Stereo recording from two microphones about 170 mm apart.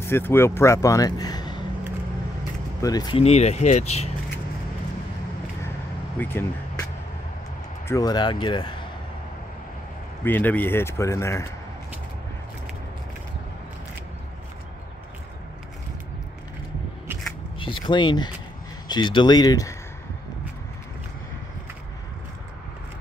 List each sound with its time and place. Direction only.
0.0 s speech: 15° left (ahead or behind)
2.8 s speech: 20° left (ahead or behind)
3.2 s speech: 40° left (ahead or behind)
6.1 s speech: 15° left (ahead or behind)
7.9 s speech: 25° left (ahead or behind)
10.2 s speech: 10° left (ahead or behind)
17.6 s speech: 30° left (ahead or behind)